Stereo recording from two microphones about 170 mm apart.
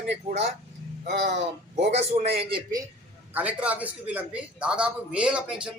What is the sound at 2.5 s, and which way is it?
Speech, 20° right (ahead or behind).